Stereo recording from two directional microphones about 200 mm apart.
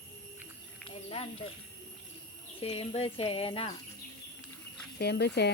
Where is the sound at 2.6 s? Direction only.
30° left (ahead or behind).